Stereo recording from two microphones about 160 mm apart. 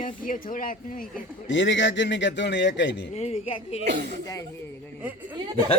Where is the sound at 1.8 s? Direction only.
90° left.